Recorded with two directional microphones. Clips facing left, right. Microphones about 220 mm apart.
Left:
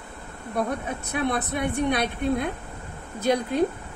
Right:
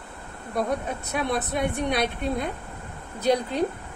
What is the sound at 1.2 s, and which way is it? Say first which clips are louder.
A woman's voice: even; 55° left (ahead or behind).